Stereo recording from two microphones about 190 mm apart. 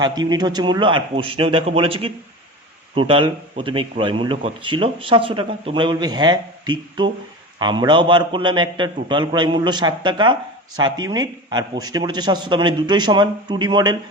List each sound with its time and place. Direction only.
0.0 s a man's voice: 20° right (ahead or behind)